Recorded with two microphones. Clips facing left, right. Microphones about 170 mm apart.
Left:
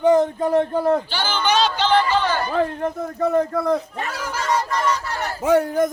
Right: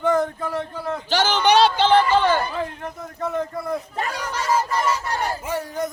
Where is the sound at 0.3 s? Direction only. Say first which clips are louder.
Left 9 dB; 35° left (ahead or behind).